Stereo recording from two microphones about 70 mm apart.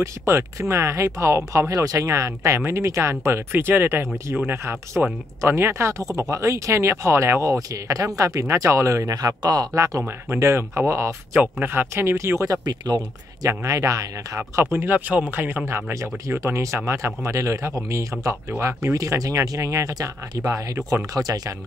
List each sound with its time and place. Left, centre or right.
0.0 s speech: right
7.5 s speech: right
10.3 s speech: right
12.6 s speech: right
13.5 s speech: right
14.6 s speech: right
14.9 s speech: right
15.6 s speech: right
18.9 s speech: right